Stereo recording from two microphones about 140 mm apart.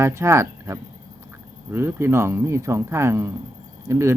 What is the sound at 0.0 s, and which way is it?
Speech, 20° right (ahead or behind).